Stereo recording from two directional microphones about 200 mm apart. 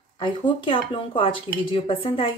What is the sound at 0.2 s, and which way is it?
A woman's voice, 25° left (ahead or behind).